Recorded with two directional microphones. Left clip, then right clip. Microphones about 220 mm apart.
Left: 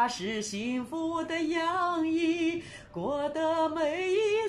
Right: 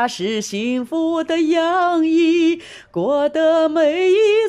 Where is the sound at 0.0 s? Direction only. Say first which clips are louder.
Right 9 dB; 50° right (ahead or behind).